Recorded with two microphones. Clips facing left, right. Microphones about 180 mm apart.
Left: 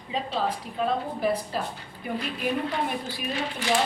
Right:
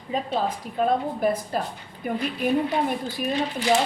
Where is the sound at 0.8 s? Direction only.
45° right (ahead or behind).